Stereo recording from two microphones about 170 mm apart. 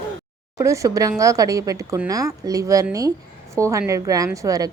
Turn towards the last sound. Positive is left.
turn(degrees=-20)  # may be behind; listen again after turning